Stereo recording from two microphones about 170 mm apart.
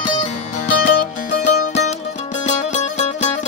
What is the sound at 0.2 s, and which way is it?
Music, 45° left (ahead or behind).